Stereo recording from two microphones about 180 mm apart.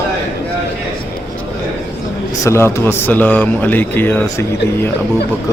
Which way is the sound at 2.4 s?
15° left (ahead or behind).